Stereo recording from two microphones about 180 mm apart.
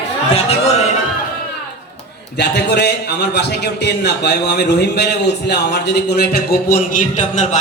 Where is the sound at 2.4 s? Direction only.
70° left (ahead or behind).